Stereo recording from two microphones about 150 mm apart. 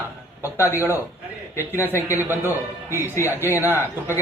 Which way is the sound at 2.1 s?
15° right (ahead or behind).